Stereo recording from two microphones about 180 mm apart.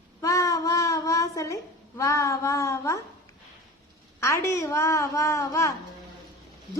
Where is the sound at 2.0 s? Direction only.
15° left (ahead or behind).